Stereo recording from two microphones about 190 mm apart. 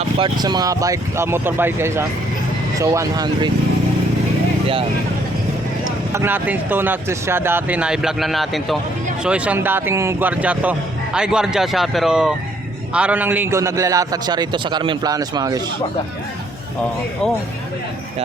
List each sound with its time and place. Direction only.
0.2 s speech: 20° right (ahead or behind)
6.1 s a man's voice: 10° right (ahead or behind)